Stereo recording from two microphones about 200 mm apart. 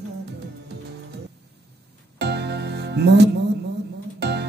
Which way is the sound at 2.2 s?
55° right (ahead or behind).